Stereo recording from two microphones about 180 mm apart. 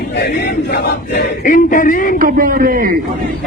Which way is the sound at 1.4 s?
45° left (ahead or behind).